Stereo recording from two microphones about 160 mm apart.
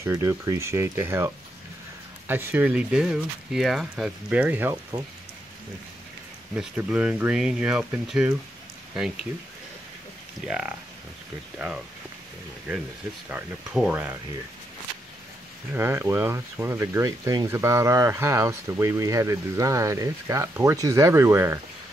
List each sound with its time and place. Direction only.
0.0 s speech: 15° right (ahead or behind)
6.5 s speech: 5° right (ahead or behind)
10.4 s speech: 5° right (ahead or behind)
13.3 s speech: 5° right (ahead or behind)
15.7 s speech: 15° right (ahead or behind)